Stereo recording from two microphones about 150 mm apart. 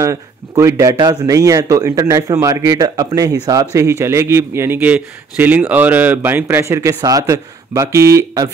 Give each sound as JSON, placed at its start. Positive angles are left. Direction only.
{"t": 0.0, "sound": "a man's voice", "side_deg": -20}